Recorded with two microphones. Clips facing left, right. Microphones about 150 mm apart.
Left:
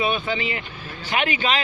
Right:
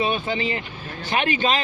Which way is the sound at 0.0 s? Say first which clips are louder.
Even; 40° right (ahead or behind).